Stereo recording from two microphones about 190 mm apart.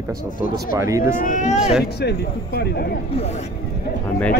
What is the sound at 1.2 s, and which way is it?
Speech, 40° left (ahead or behind).